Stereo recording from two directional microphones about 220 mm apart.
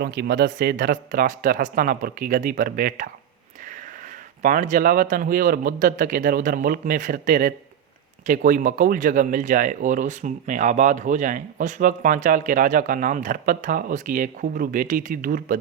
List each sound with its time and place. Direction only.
0.0 s speech: 45° right (ahead or behind)
4.4 s speech: 35° right (ahead or behind)